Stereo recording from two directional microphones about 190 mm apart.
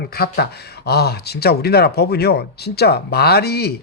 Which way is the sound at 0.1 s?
55° left (ahead or behind).